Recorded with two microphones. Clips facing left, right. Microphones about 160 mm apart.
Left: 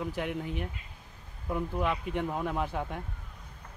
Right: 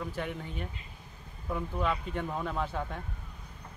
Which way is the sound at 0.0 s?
10° left (ahead or behind).